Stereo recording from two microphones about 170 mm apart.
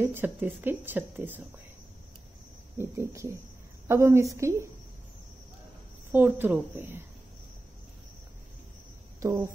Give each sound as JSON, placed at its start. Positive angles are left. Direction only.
{"t": 0.0, "sound": "speech", "side_deg": -10}
{"t": 2.8, "sound": "speech", "side_deg": -15}
{"t": 6.1, "sound": "speech", "side_deg": -10}
{"t": 9.2, "sound": "speech", "side_deg": -20}